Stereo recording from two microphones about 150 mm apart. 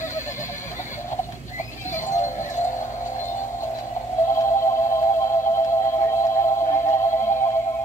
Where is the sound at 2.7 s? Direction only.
20° left (ahead or behind).